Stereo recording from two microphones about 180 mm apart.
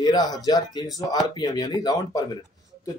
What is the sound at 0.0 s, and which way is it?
Speech, 25° left (ahead or behind).